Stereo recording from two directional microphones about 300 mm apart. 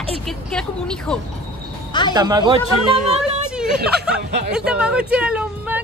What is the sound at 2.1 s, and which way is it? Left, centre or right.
Speech, centre.